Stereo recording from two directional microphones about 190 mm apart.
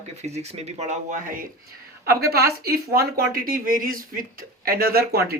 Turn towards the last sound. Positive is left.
turn(degrees=-55)  # may be behind; listen again after turning